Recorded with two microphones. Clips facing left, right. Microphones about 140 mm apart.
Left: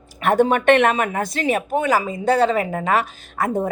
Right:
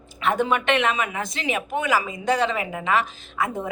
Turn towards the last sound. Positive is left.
turn(degrees=40)  # may be behind; listen again after turning